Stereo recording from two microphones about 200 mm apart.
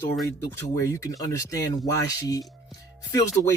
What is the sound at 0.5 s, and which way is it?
Speech, 15° left (ahead or behind).